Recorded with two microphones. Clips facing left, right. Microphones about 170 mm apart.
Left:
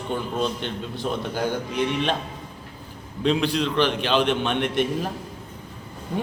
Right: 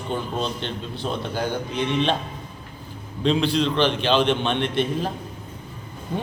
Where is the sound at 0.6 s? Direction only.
10° left (ahead or behind).